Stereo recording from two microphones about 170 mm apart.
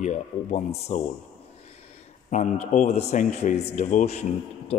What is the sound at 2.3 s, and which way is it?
A man's voice, 45° left (ahead or behind).